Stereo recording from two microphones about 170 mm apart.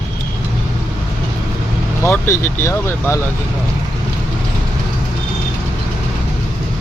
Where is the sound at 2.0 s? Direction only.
15° left (ahead or behind).